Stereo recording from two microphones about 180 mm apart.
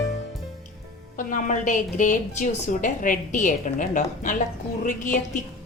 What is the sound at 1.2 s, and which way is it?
A woman's voice, 45° left (ahead or behind).